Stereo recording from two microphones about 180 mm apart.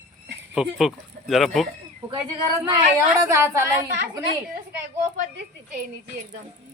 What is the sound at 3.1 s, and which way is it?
Speech, 15° right (ahead or behind).